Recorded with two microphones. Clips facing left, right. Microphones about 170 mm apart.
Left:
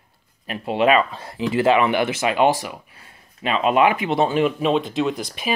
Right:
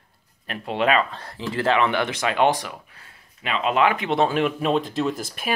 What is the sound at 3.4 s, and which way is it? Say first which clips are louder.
Speech: left 4 dB; 25° left (ahead or behind).